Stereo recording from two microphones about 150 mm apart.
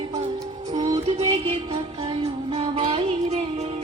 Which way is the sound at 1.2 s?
40° right (ahead or behind).